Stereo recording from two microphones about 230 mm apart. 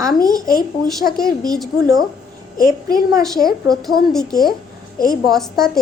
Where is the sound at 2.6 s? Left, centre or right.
Left.